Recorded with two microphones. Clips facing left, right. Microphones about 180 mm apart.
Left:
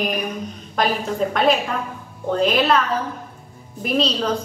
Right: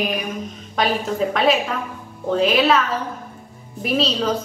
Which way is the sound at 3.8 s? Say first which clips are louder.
Even; 5° right (ahead or behind).